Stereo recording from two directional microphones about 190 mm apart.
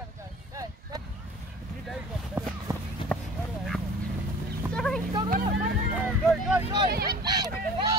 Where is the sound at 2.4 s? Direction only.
10° right (ahead or behind).